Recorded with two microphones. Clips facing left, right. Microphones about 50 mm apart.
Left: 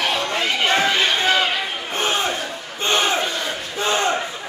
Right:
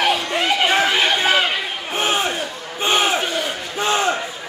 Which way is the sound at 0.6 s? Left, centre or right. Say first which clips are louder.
Left 1 dB; centre.